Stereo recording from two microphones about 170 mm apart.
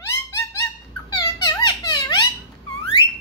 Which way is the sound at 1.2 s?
25° left (ahead or behind).